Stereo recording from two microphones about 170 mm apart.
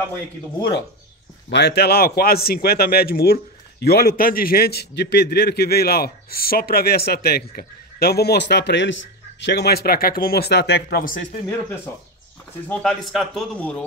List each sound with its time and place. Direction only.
1.5 s a man's voice: 80° left
12.6 s speech: 5° left (ahead or behind)